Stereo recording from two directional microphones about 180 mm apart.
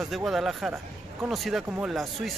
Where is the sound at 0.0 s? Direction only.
Centre (ahead or behind).